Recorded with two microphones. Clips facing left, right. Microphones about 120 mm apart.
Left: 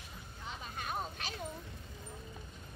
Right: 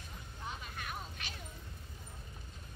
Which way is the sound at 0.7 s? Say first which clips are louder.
Left 5 dB; 35° left (ahead or behind).